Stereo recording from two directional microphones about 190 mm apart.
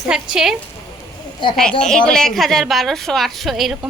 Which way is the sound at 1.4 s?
25° left (ahead or behind).